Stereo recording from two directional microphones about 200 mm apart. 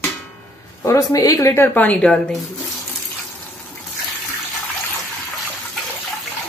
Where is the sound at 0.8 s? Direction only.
15° left (ahead or behind).